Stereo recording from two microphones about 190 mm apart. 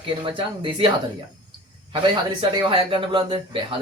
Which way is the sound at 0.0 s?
25° right (ahead or behind).